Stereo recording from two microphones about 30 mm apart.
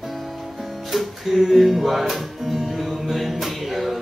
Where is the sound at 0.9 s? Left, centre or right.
Centre.